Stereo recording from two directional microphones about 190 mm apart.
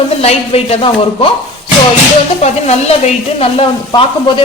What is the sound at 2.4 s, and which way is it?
Speech, 35° left (ahead or behind).